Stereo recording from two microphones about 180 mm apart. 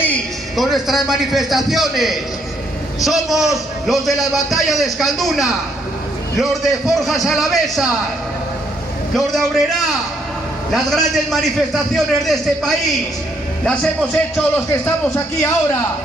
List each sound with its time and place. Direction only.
0.0 s a man's voice: 5° left (ahead or behind)
9.1 s a man's voice: centre (ahead or behind)